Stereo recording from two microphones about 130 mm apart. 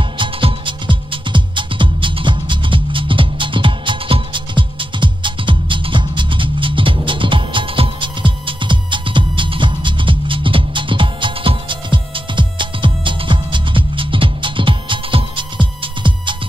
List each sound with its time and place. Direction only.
0.2 s music: 40° right (ahead or behind)